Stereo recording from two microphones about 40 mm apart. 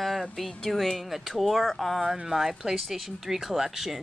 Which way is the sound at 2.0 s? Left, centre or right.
Centre.